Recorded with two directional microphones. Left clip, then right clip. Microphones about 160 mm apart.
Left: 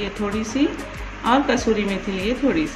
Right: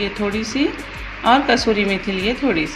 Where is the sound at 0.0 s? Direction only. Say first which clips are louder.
Right 4 dB; 35° right (ahead or behind).